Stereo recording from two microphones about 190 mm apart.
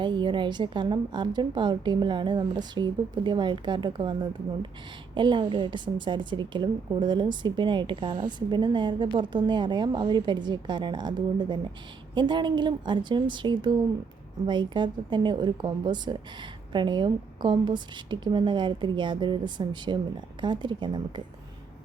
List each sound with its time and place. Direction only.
0.0 s a woman's voice: 25° right (ahead or behind)